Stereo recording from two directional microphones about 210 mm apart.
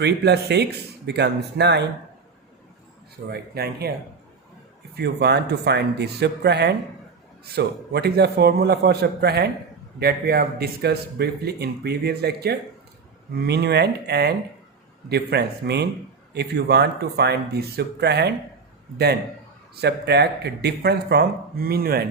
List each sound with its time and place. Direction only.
0.0 s speech: 55° right (ahead or behind)
3.2 s speech: 50° right (ahead or behind)
4.9 s speech: 50° right (ahead or behind)
19.7 s speech: 50° right (ahead or behind)